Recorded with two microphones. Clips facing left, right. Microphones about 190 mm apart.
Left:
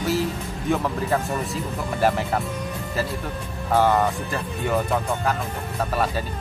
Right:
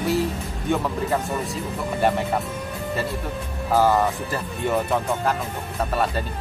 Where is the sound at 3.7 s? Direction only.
5° right (ahead or behind).